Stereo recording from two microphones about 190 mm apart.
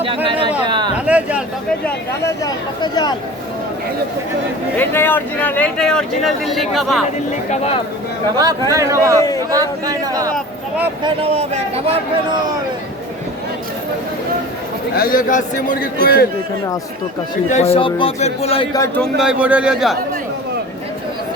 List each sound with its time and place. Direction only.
0.9 s a sound: 5° right (ahead or behind)
1.8 s speech: 15° left (ahead or behind)
4.8 s speech: 10° left (ahead or behind)
7.5 s speech: 35° left (ahead or behind)
8.7 s a man's voice: 15° right (ahead or behind)
11.0 s speech: 30° right (ahead or behind)
14.9 s a man's voice: 50° left (ahead or behind)
17.5 s speech: 30° left (ahead or behind)
19.2 s speech: 5° right (ahead or behind)